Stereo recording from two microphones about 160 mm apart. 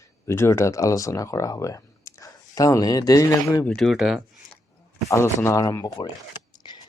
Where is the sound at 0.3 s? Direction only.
15° left (ahead or behind).